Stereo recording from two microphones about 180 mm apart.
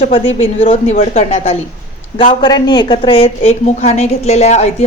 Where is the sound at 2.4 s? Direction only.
25° left (ahead or behind).